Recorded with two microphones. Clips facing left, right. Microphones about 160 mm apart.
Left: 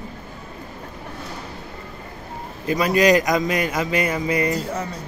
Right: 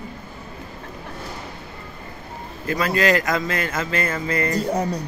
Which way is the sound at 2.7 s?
15° left (ahead or behind).